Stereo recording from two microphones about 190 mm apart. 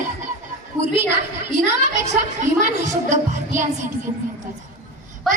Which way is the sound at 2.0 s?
40° right (ahead or behind).